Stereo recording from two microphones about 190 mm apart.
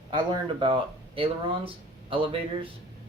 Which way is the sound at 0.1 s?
25° right (ahead or behind).